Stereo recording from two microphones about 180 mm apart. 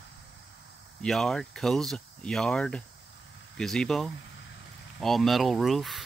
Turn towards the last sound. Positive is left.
turn(degrees=0)  # may be behind; listen again after turning